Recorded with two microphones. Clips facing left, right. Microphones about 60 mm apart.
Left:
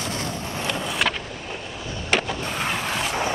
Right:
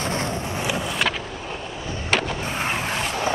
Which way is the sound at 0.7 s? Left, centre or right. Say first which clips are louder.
Right 1 dB; centre.